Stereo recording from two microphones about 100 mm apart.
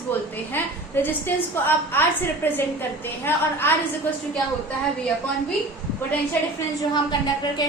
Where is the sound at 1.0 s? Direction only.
20° left (ahead or behind).